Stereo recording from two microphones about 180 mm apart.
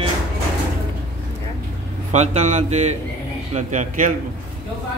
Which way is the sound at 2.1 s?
40° right (ahead or behind).